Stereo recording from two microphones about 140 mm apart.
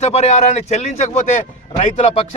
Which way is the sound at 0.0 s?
50° left (ahead or behind).